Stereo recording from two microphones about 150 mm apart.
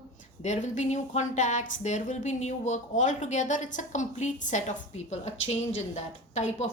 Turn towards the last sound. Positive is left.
turn(degrees=50)  # may be behind; listen again after turning